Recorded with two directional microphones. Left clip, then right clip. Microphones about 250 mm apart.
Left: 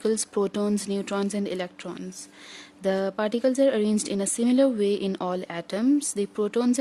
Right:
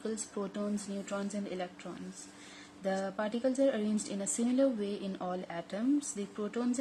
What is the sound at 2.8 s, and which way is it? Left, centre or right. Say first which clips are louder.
A woman's voice: left 9 dB; left.